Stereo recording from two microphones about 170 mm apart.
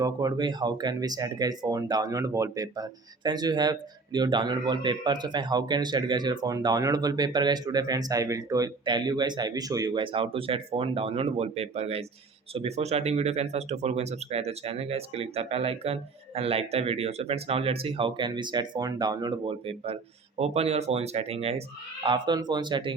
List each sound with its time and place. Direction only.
0.0 s speech: 25° right (ahead or behind)
22.0 s speech: 25° right (ahead or behind)